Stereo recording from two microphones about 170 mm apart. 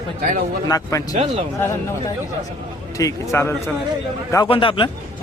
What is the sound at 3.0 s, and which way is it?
Speech, 15° left (ahead or behind).